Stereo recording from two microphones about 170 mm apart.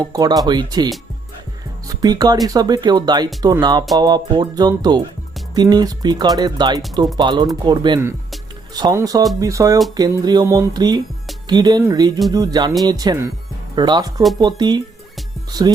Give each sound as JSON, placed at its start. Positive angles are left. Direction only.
{"t": 0.1, "sound": "speech", "side_deg": -20}